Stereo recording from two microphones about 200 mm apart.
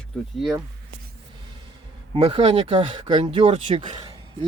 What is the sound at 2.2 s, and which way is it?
Speech, 25° right (ahead or behind).